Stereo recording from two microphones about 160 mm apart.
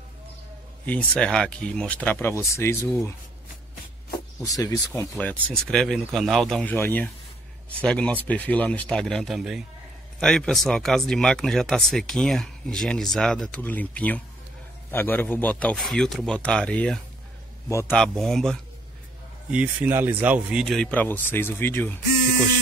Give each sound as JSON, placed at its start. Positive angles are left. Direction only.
{"t": 0.8, "sound": "speech", "side_deg": 5}
{"t": 4.4, "sound": "speech", "side_deg": 20}
{"t": 5.1, "sound": "speech", "side_deg": 5}
{"t": 17.6, "sound": "speech", "side_deg": 15}
{"t": 17.9, "sound": "speech", "side_deg": 5}
{"t": 19.5, "sound": "speech", "side_deg": -10}